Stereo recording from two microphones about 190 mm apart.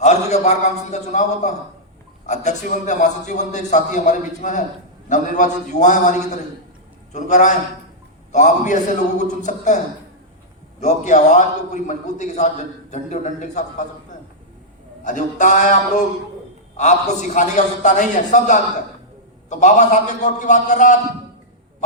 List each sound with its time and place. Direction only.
0.0 s a man's voice: 35° left (ahead or behind)
15.0 s a man's voice: 40° left (ahead or behind)